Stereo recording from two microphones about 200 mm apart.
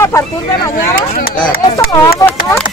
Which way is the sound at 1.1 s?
50° left (ahead or behind).